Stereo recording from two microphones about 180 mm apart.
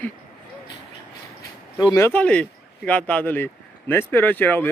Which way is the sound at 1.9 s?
10° left (ahead or behind).